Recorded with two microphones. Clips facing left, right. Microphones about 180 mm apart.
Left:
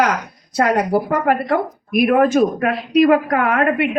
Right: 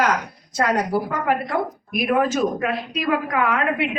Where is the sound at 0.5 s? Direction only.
60° left (ahead or behind).